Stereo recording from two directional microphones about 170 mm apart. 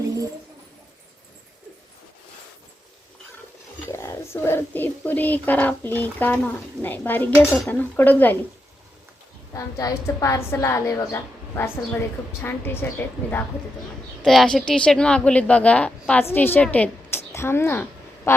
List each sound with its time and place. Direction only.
3.8 s speech: 15° left (ahead or behind)
9.5 s speech: 20° left (ahead or behind)
14.2 s speech: centre (ahead or behind)